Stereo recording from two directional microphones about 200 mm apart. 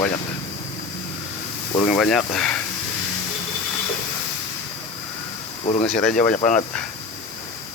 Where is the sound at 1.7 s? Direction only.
5° left (ahead or behind).